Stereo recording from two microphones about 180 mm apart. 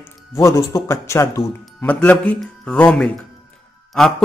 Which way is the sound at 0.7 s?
15° left (ahead or behind).